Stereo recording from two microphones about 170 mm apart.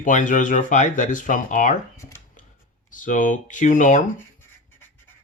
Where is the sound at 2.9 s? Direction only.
50° left (ahead or behind).